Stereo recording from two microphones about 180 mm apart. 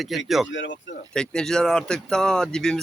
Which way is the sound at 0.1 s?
Centre (ahead or behind).